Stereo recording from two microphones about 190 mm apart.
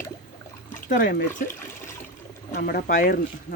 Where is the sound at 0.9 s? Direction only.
45° left (ahead or behind).